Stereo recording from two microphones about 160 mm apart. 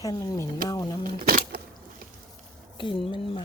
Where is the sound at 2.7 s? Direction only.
30° left (ahead or behind).